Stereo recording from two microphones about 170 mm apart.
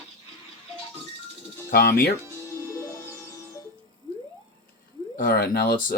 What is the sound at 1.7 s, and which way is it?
Speech, 65° left (ahead or behind).